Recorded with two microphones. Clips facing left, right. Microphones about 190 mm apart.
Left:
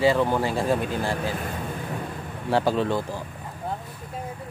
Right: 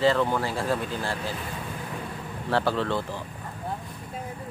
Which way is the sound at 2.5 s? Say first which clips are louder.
Left 3 dB; 15° left (ahead or behind).